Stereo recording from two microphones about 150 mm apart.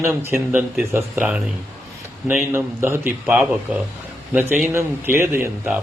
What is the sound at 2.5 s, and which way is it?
A man's voice, 15° right (ahead or behind).